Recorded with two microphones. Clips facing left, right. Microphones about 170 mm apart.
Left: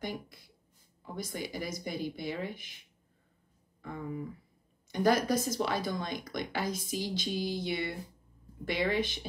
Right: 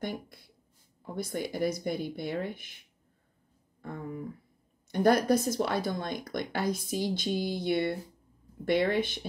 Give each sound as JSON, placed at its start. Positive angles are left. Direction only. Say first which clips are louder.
{"t": 1.0, "sound": "speech", "louder": "right 4 dB", "side_deg": -55}
{"t": 3.8, "sound": "speech", "louder": "right 1 dB", "side_deg": -50}